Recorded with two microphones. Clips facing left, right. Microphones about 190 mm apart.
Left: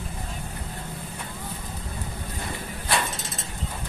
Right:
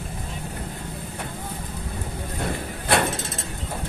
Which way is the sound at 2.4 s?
60° right (ahead or behind).